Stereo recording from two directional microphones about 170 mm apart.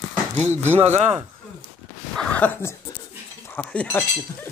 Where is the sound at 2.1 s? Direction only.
10° left (ahead or behind).